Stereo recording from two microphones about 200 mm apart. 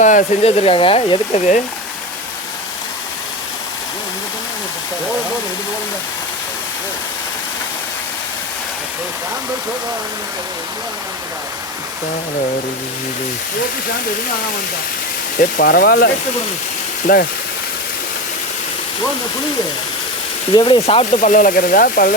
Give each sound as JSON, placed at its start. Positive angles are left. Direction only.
{"t": 0.0, "sound": "speech", "side_deg": 40}
{"t": 15.4, "sound": "speech", "side_deg": 45}
{"t": 17.1, "sound": "speech", "side_deg": 45}
{"t": 20.5, "sound": "speech", "side_deg": 20}